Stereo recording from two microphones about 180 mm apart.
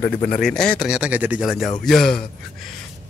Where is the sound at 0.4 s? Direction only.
5° left (ahead or behind).